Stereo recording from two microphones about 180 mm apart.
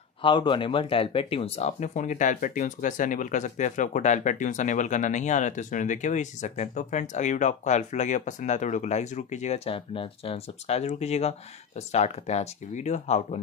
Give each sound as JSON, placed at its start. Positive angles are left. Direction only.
{"t": 0.2, "sound": "speech", "side_deg": 25}